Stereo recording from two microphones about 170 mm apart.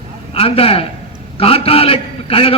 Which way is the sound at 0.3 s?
35° left (ahead or behind).